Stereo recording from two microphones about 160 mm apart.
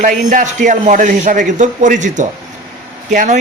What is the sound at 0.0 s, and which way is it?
A man's voice, 55° right (ahead or behind).